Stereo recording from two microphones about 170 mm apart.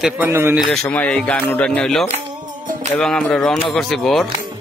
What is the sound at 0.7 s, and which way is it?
Speech, 5° left (ahead or behind).